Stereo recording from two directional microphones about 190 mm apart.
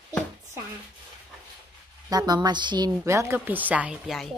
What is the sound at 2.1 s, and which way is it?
A woman's voice, 20° right (ahead or behind).